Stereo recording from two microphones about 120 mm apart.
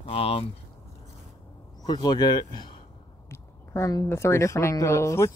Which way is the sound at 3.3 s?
25° left (ahead or behind).